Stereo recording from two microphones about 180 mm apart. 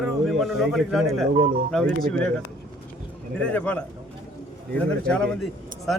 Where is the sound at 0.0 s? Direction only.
Centre (ahead or behind).